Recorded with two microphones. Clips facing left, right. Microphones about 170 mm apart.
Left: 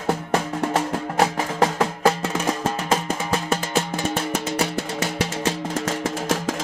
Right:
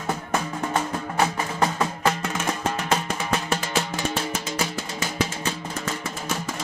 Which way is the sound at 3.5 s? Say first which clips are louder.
Left 3 dB; 50° left (ahead or behind).